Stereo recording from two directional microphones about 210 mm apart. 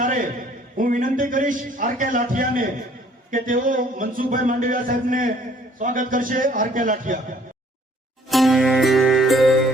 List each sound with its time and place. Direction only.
0.0 s a sound: 40° right (ahead or behind)
0.8 s speech: 40° right (ahead or behind)
8.3 s music: centre (ahead or behind)